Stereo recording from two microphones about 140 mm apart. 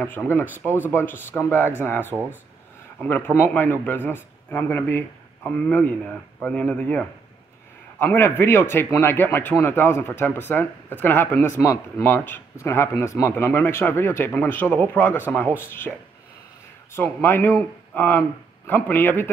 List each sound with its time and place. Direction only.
0.2 s speech: 5° left (ahead or behind)
0.5 s speech: 15° right (ahead or behind)
0.8 s speech: 15° left (ahead or behind)
16.9 s speech: 15° left (ahead or behind)